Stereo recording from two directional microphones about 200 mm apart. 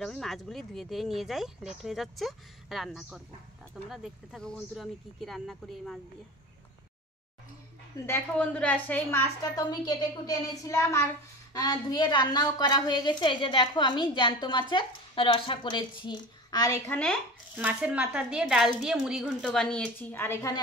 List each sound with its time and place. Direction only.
0.0 s speech: centre (ahead or behind)
8.1 s a woman's voice: 10° left (ahead or behind)
17.6 s speech: 5° right (ahead or behind); by 20.6 s 15° left (ahead or behind)